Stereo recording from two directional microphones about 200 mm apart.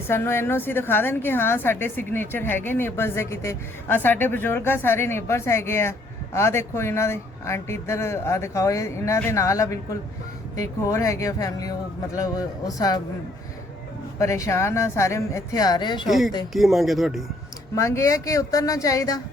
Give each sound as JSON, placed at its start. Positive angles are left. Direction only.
{"t": 0.1, "sound": "a woman's voice", "side_deg": 10}
{"t": 14.2, "sound": "a woman's voice", "side_deg": 15}
{"t": 16.0, "sound": "speech", "side_deg": 0}
{"t": 17.7, "sound": "a woman's voice", "side_deg": 15}